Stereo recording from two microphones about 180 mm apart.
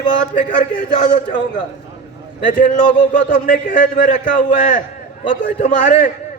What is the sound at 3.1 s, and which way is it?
A man's voice, 45° left (ahead or behind).